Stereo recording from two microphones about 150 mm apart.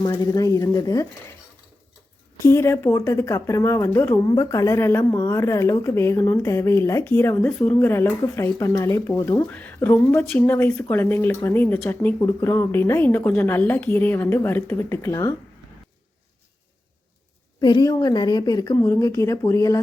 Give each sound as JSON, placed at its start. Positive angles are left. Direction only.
{"t": 0.0, "sound": "a woman's voice", "side_deg": 25}
{"t": 2.4, "sound": "speech", "side_deg": 20}
{"t": 17.6, "sound": "a woman's voice", "side_deg": 30}